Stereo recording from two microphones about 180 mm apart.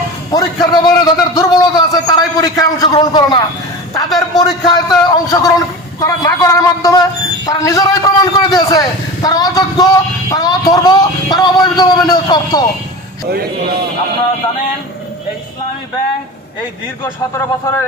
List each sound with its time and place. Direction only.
0.3 s a man's voice: 20° left (ahead or behind)
17.0 s a man's voice: 15° left (ahead or behind)